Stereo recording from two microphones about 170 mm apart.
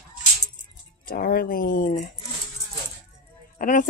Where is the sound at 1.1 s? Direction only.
60° left (ahead or behind).